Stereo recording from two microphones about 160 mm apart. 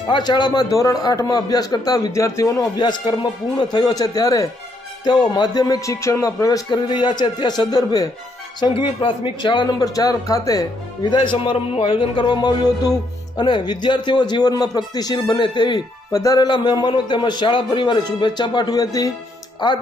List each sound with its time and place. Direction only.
0.1 s a man's voice: 25° left (ahead or behind)